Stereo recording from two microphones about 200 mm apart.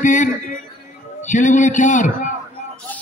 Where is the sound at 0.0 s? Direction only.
40° left (ahead or behind).